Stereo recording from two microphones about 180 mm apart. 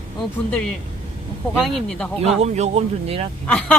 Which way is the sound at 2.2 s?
35° right (ahead or behind).